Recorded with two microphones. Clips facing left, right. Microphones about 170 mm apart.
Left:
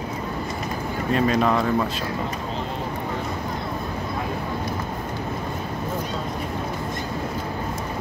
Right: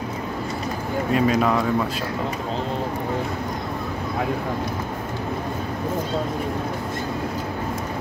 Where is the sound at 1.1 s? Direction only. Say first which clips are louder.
Even; 5° right (ahead or behind).